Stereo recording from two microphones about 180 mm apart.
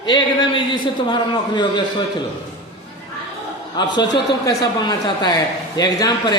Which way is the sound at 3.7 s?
25° left (ahead or behind).